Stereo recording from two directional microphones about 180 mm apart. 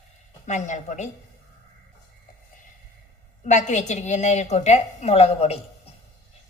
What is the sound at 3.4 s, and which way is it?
A woman's voice, 40° left (ahead or behind).